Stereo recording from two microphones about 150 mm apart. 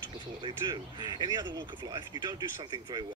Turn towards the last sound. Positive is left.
turn(degrees=-30)  # may be behind; listen again after turning